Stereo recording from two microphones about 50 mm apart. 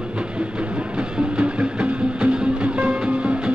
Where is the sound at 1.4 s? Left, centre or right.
Right.